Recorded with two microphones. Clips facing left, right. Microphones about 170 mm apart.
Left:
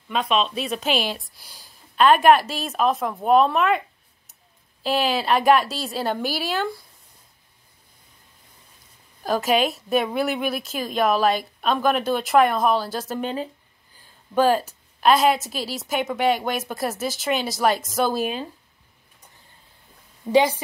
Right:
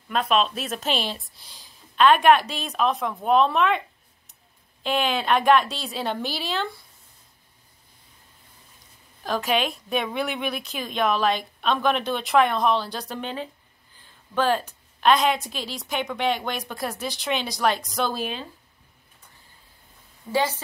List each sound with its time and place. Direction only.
0.1 s speech: centre (ahead or behind)
4.8 s speech: centre (ahead or behind)
9.4 s a woman's voice: 40° left (ahead or behind)
9.8 s speech: 5° left (ahead or behind)
13.2 s a woman's voice: 40° left (ahead or behind)
15.0 s speech: 5° left (ahead or behind)
20.2 s a woman's voice: 15° left (ahead or behind)